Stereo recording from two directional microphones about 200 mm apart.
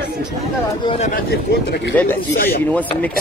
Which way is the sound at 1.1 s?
55° left (ahead or behind).